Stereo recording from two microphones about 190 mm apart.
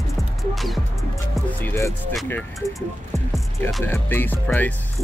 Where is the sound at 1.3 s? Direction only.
10° left (ahead or behind).